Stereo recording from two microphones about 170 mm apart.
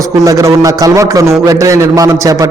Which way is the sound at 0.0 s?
20° right (ahead or behind).